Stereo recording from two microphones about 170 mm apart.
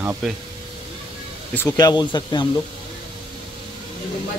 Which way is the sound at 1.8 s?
25° left (ahead or behind).